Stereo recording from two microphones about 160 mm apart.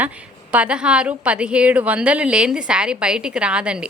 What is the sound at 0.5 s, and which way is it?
A woman's voice, 5° right (ahead or behind).